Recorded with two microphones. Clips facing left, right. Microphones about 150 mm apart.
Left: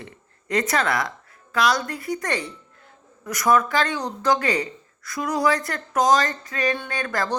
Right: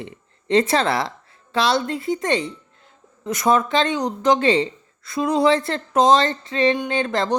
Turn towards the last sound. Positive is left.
turn(degrees=-25)  # may be behind; listen again after turning